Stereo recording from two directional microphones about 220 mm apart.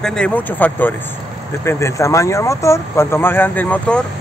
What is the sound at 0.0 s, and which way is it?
Speech, 5° left (ahead or behind).